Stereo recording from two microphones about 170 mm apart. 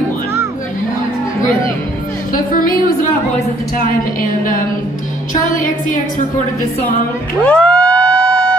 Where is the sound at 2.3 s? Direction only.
55° left (ahead or behind).